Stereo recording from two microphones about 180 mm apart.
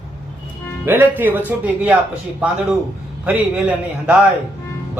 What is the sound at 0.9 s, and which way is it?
Speech, 10° right (ahead or behind).